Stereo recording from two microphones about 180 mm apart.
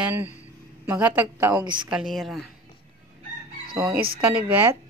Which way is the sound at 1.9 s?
Centre (ahead or behind).